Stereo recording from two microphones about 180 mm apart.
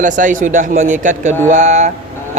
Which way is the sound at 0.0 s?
45° right (ahead or behind).